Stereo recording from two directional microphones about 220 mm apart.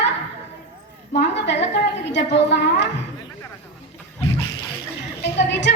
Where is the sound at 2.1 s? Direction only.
55° left (ahead or behind).